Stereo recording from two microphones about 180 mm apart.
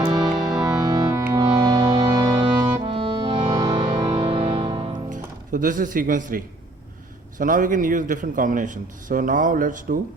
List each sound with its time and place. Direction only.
0.0 s music: 25° right (ahead or behind)
5.0 s a man's voice: 45° right (ahead or behind)